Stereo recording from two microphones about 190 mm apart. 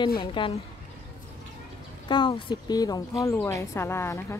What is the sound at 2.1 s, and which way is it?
Speech, 25° left (ahead or behind).